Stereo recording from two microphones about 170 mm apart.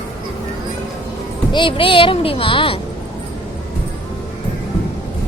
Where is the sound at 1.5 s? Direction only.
30° left (ahead or behind).